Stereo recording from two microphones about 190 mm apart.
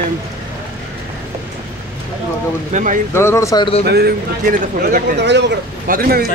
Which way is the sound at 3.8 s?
55° right (ahead or behind).